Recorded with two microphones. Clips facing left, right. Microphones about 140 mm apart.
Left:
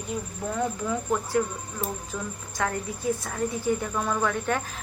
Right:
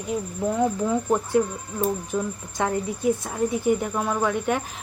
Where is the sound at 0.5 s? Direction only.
15° right (ahead or behind).